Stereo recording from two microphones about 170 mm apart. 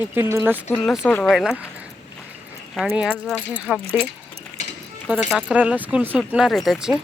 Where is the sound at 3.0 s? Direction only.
5° right (ahead or behind).